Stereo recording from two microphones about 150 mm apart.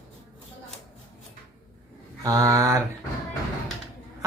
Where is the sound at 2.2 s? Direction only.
20° right (ahead or behind).